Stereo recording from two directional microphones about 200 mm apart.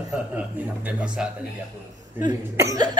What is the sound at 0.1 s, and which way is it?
A man's voice, 5° right (ahead or behind).